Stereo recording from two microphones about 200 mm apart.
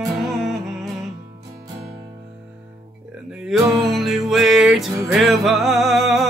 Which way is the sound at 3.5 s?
Centre (ahead or behind).